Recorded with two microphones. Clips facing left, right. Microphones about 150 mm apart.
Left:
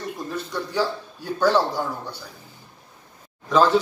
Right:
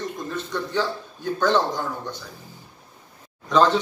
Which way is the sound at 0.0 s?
10° left (ahead or behind).